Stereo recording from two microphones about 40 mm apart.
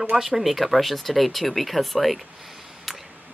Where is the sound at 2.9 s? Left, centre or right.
Centre.